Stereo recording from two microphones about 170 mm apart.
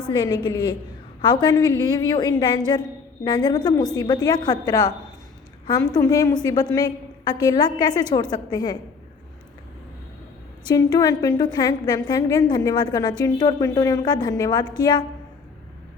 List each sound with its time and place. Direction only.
0.1 s a woman's voice: 25° left (ahead or behind)
5.9 s a woman's voice: 20° left (ahead or behind)
10.7 s a woman's voice: 25° left (ahead or behind)